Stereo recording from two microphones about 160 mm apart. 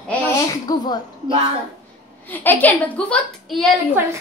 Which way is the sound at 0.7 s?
25° left (ahead or behind).